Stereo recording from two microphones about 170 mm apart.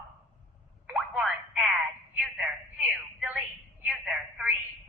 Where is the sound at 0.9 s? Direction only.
5° right (ahead or behind).